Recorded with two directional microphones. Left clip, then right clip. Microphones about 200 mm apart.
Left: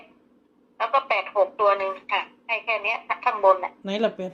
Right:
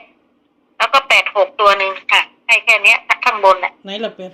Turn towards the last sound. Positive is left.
turn(degrees=0)  # may be behind; listen again after turning